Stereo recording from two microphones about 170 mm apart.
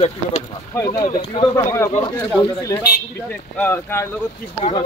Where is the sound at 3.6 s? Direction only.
15° left (ahead or behind).